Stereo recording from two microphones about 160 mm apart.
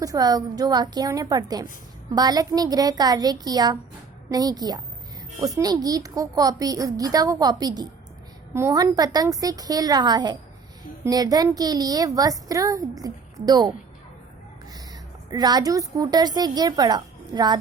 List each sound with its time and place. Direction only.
0.0 s a woman's voice: 20° right (ahead or behind)
15.3 s a woman's voice: 25° right (ahead or behind)